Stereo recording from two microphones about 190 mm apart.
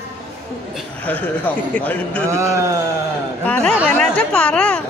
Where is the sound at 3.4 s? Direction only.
5° left (ahead or behind).